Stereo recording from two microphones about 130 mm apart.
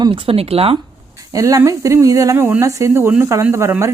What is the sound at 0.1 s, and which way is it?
Speech, 50° right (ahead or behind).